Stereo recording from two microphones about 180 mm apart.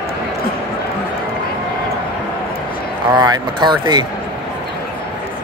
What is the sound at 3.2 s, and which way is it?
Speech, 25° right (ahead or behind).